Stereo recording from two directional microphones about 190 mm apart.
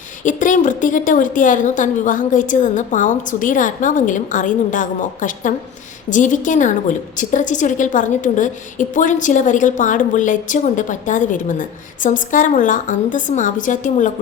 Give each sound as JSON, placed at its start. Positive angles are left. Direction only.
{"t": 0.3, "sound": "a woman's voice", "side_deg": 40}